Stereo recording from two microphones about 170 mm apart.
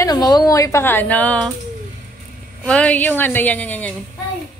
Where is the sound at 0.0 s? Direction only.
20° left (ahead or behind).